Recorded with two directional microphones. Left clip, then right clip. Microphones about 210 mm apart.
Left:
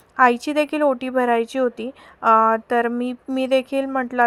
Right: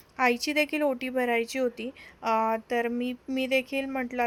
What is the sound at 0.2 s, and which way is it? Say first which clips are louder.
A woman's voice: left 8 dB; 15° left (ahead or behind).